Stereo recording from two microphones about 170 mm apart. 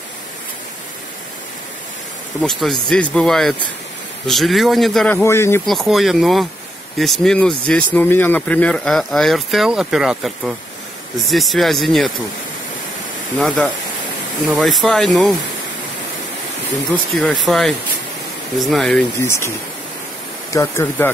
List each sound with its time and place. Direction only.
2.9 s speech: 5° left (ahead or behind)
5.7 s speech: centre (ahead or behind)
13.4 s speech: 5° left (ahead or behind)
16.9 s speech: 5° left (ahead or behind)
19.2 s speech: 15° left (ahead or behind)
20.5 s speech: 15° left (ahead or behind)